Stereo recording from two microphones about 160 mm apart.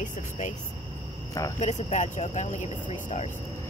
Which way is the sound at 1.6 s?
45° left (ahead or behind).